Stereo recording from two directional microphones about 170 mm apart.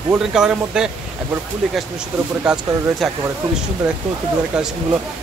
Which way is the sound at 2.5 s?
5° right (ahead or behind).